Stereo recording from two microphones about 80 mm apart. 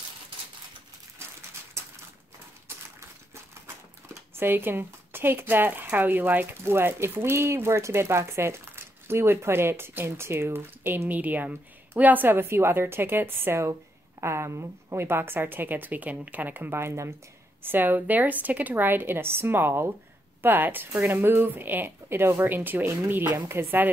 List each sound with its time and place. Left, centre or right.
3.6 s speech: right